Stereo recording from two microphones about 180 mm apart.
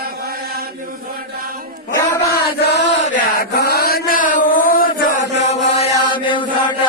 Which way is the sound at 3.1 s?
55° left (ahead or behind).